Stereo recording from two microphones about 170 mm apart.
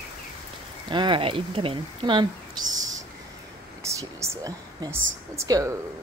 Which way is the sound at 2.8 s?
20° right (ahead or behind).